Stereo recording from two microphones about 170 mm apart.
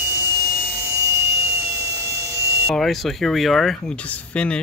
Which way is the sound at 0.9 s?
20° right (ahead or behind).